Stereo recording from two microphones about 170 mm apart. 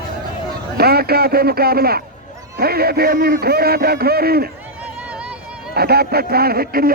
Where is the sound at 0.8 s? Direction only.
65° right (ahead or behind).